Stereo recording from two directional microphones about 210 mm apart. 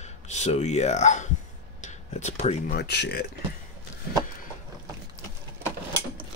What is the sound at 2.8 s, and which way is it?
Speech, 50° left (ahead or behind).